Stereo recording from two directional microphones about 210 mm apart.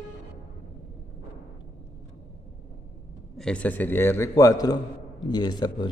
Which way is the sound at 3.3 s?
5° left (ahead or behind).